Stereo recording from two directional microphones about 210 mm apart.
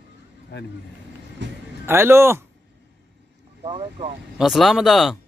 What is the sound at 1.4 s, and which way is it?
Music, 60° right (ahead or behind).